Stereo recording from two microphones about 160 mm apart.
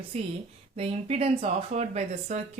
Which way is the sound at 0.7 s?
40° right (ahead or behind).